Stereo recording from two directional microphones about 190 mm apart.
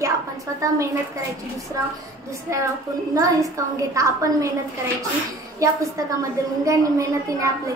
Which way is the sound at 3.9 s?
15° right (ahead or behind).